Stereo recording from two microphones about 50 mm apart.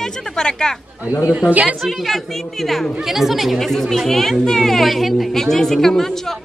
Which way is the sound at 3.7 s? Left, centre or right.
Centre.